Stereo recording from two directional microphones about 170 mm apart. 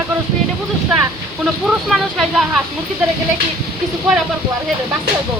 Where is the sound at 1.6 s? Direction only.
Centre (ahead or behind).